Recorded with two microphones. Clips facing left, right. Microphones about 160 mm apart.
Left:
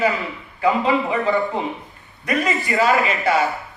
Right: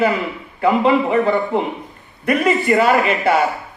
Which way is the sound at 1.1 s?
55° right (ahead or behind).